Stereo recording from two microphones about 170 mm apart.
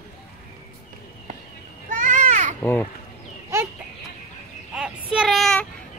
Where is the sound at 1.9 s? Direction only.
50° right (ahead or behind).